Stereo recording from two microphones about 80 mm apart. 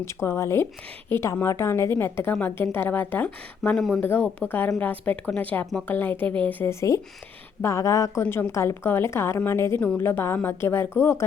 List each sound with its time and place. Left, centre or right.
0.0 s a woman's voice: left; by 3.8 s centre
3.8 s speech: centre
4.0 s a woman's voice: left
6.7 s a woman's voice: left
8.3 s a woman's voice: left